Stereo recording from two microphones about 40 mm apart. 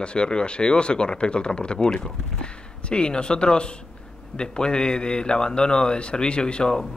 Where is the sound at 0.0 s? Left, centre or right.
Left.